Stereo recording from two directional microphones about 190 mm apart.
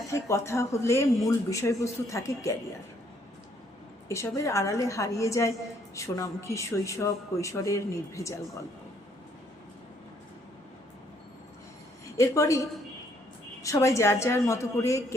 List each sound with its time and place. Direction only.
0.1 s speech: 15° left (ahead or behind)
4.1 s speech: 15° left (ahead or behind)
12.1 s speech: 15° left (ahead or behind)